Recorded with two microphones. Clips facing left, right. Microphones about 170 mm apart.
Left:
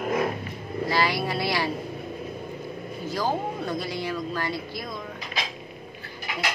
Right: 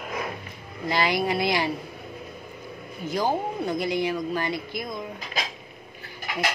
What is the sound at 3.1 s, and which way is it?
A woman's voice, 20° right (ahead or behind).